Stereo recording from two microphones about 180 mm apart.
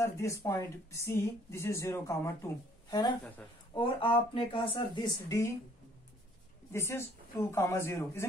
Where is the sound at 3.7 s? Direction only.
30° left (ahead or behind).